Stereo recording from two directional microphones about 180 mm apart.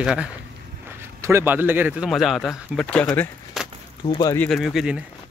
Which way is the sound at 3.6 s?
Centre (ahead or behind).